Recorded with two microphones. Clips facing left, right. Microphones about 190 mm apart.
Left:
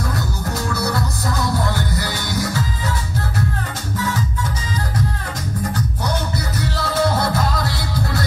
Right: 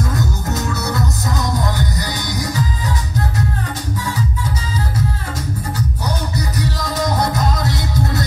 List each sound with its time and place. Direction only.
0.6 s music: 20° right (ahead or behind)
6.0 s music: 15° right (ahead or behind)